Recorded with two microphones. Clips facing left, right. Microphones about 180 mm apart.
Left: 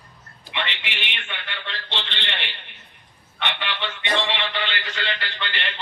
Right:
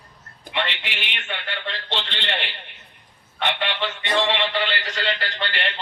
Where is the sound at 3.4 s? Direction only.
40° right (ahead or behind).